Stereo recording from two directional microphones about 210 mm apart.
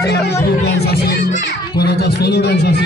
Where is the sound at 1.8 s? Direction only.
50° left (ahead or behind).